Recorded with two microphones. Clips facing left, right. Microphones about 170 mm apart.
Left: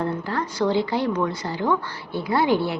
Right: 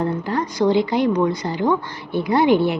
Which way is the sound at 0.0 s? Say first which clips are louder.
Right 4 dB; 15° right (ahead or behind).